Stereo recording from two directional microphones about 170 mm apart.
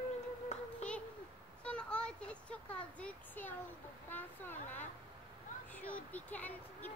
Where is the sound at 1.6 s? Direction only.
5° left (ahead or behind).